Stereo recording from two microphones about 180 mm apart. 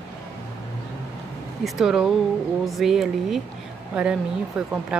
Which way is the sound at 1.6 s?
Centre (ahead or behind).